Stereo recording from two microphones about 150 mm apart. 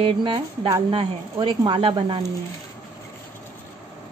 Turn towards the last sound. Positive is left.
turn(degrees=-35)  # may be behind; listen again after turning